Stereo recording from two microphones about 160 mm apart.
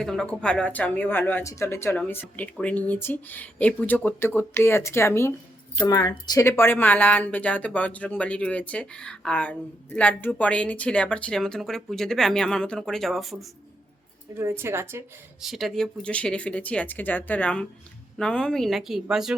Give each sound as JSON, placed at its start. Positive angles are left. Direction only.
{"t": 0.0, "sound": "speech", "side_deg": 5}
{"t": 14.3, "sound": "speech", "side_deg": -15}
{"t": 15.4, "sound": "speech", "side_deg": 0}